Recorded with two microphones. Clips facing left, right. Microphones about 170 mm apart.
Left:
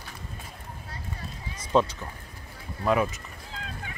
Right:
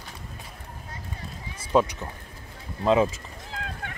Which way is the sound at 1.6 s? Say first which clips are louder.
Right 1 dB; 10° right (ahead or behind).